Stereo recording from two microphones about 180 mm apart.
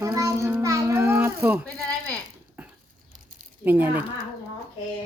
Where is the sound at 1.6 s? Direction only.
5° left (ahead or behind).